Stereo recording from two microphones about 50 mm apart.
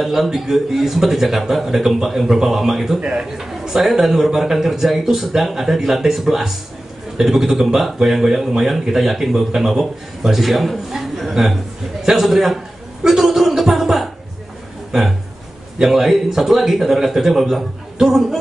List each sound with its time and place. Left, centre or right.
0.0 s speech: centre
3.0 s a man's voice: centre
13.0 s a sound: centre
15.8 s speech: centre